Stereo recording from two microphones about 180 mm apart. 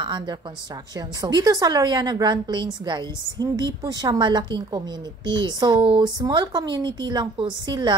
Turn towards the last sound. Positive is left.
turn(degrees=-25)  # may be behind; listen again after turning